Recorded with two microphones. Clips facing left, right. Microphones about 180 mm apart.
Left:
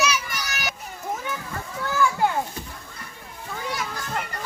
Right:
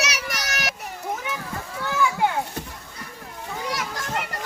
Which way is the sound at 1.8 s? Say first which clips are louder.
Left 1 dB; centre (ahead or behind).